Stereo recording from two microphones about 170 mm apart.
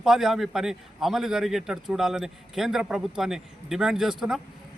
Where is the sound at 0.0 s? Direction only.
Centre (ahead or behind).